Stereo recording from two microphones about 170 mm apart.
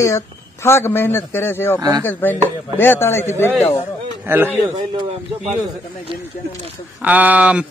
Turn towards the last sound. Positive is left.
turn(degrees=-5)  # may be behind; listen again after turning